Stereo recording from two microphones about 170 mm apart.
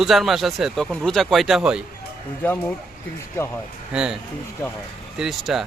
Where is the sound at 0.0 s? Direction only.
Centre (ahead or behind).